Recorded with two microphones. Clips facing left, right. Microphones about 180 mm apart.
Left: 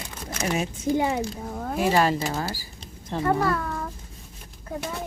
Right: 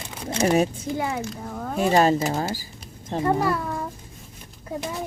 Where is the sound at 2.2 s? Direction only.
25° right (ahead or behind).